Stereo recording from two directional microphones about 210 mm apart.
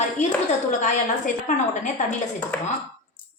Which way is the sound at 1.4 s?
35° left (ahead or behind).